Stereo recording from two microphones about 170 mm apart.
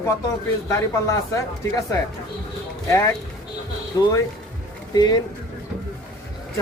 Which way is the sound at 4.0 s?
20° left (ahead or behind).